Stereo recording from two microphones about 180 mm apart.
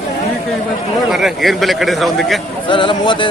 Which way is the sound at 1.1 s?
Centre (ahead or behind).